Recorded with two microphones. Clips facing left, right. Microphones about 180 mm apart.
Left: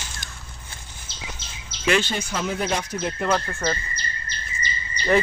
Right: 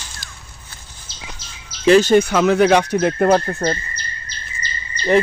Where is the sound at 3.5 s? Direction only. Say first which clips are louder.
Right 6 dB; 35° right (ahead or behind).